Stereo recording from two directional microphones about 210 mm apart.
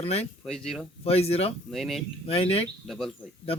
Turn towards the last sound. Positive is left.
turn(degrees=0)  # may be behind; listen again after turning